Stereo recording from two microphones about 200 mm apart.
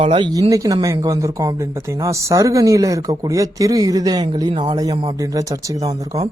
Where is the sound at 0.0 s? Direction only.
30° right (ahead or behind).